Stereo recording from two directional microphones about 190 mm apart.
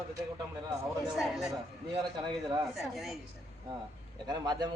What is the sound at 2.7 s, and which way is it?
Speech, centre (ahead or behind).